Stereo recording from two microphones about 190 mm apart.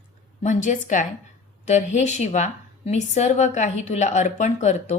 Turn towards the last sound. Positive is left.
turn(degrees=40)  # may be behind; listen again after turning